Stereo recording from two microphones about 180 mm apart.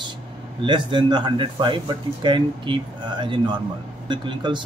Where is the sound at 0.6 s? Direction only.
25° right (ahead or behind).